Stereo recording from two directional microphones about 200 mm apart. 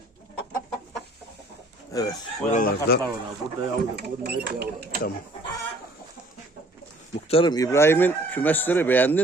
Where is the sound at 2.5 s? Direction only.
45° left (ahead or behind).